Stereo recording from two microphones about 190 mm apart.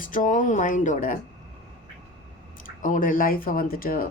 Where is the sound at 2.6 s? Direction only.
45° left (ahead or behind).